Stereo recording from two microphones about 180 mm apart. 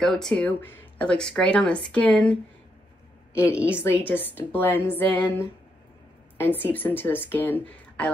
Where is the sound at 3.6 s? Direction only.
15° left (ahead or behind).